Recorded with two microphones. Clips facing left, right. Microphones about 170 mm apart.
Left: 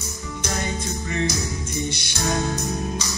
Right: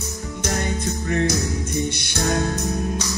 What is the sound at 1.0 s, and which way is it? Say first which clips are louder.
Music: right 4 dB; 55° right (ahead or behind).